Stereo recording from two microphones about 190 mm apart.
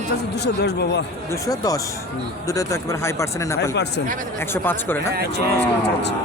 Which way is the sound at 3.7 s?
60° left (ahead or behind).